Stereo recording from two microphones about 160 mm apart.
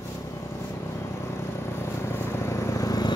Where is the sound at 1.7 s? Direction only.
15° left (ahead or behind).